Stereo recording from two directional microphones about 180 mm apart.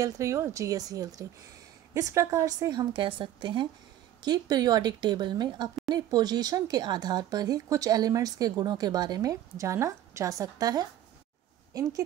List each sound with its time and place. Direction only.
0.0 s speech: 15° right (ahead or behind)